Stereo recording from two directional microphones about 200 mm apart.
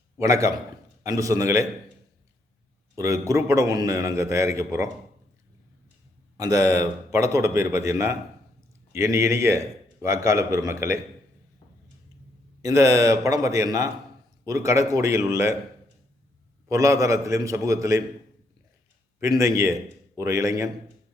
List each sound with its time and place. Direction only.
0.2 s a man's voice: 15° right (ahead or behind)
2.9 s a man's voice: 15° right (ahead or behind)
6.3 s a man's voice: 15° right (ahead or behind)
12.6 s a man's voice: 15° right (ahead or behind)
16.6 s a man's voice: 15° right (ahead or behind)
19.2 s a man's voice: 15° right (ahead or behind)